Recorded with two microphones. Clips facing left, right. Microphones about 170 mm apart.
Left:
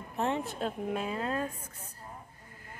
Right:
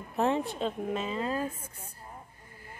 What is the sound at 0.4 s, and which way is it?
A woman's voice, 5° left (ahead or behind).